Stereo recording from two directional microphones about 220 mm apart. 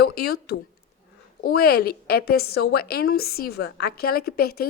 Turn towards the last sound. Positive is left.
turn(degrees=45)  # may be behind; listen again after turning